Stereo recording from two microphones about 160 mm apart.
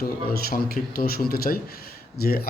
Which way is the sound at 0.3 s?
65° left (ahead or behind).